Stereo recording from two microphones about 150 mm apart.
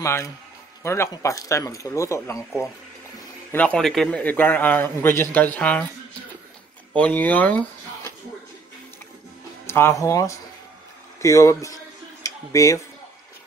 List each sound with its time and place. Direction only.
0.0 s speech: 20° left (ahead or behind)
3.5 s a man's voice: 5° left (ahead or behind)
7.0 s speech: 10° left (ahead or behind)
9.7 s speech: 15° left (ahead or behind)
11.1 s a sound: 20° left (ahead or behind)